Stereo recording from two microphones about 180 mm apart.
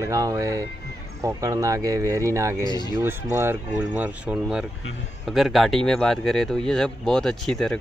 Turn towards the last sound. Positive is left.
turn(degrees=0)  # may be behind; listen again after turning